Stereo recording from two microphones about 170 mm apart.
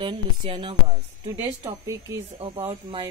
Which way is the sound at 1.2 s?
20° right (ahead or behind).